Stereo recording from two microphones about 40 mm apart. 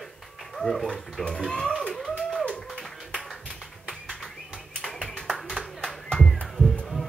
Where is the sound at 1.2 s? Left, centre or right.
Centre.